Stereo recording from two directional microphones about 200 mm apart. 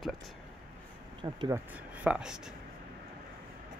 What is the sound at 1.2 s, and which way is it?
Speech, 20° right (ahead or behind).